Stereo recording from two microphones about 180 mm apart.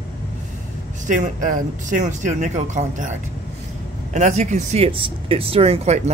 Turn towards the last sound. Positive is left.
turn(degrees=-35)  # may be behind; listen again after turning